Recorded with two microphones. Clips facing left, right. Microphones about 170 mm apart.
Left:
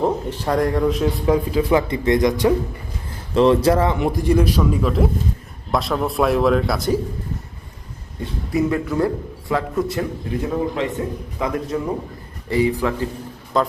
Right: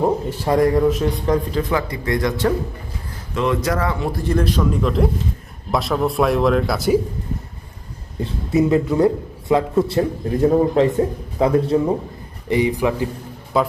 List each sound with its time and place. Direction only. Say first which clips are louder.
0.0 s a man's voice: right 2 dB; 10° right (ahead or behind); by 1.8 s 10° left (ahead or behind)
1.9 s speech: left 4 dB; 20° left (ahead or behind)
3.3 s a man's voice: left 6 dB; 30° left (ahead or behind); by 7.0 s 5° right (ahead or behind)
8.2 s a man's voice: right 3 dB; 25° right (ahead or behind)
10.5 s a man's voice: right 6 dB; 40° right (ahead or behind)
11.3 s a man's voice: right 8 dB; 30° right (ahead or behind)
12.5 s speech: right 1 dB; 20° right (ahead or behind)